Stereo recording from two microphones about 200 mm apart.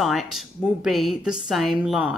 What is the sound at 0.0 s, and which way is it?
A woman's voice, centre (ahead or behind).